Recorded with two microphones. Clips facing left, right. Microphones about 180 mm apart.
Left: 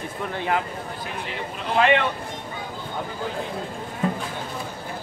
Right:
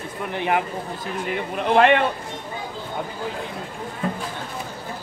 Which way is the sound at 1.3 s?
55° right (ahead or behind).